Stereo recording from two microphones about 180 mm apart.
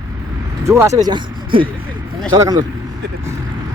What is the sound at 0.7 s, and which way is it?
Speech, 15° right (ahead or behind).